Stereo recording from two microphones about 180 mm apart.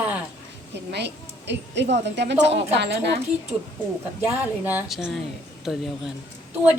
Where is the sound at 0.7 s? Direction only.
70° right (ahead or behind).